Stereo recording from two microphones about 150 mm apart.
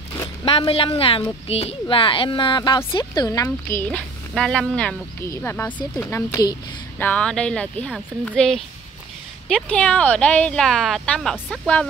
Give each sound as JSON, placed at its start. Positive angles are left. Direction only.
{"t": 0.5, "sound": "a child's voice", "side_deg": 40}
{"t": 4.3, "sound": "a woman's voice", "side_deg": 5}
{"t": 7.0, "sound": "a woman's voice", "side_deg": 10}
{"t": 9.7, "sound": "a woman's voice", "side_deg": 10}